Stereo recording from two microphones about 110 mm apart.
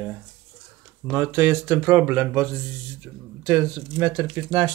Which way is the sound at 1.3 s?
25° right (ahead or behind).